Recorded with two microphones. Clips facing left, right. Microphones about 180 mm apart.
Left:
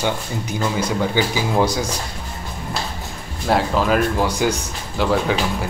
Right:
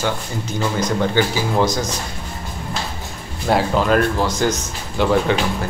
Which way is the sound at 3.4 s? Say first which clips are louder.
Right 1 dB; centre (ahead or behind).